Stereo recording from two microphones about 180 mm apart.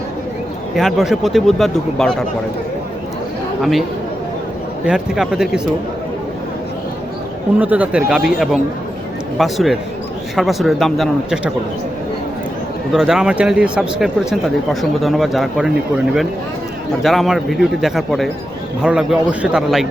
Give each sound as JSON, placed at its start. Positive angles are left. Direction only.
{"t": 0.8, "sound": "speech", "side_deg": 0}
{"t": 3.6, "sound": "speech", "side_deg": 0}
{"t": 4.9, "sound": "speech", "side_deg": -5}
{"t": 7.6, "sound": "speech", "side_deg": -10}
{"t": 12.9, "sound": "speech", "side_deg": -5}
{"t": 17.0, "sound": "speech", "side_deg": 0}